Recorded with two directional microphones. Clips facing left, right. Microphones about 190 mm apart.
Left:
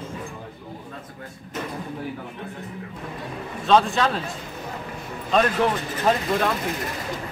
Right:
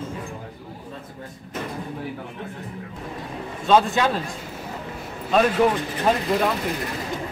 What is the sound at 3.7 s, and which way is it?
Speech, 5° right (ahead or behind).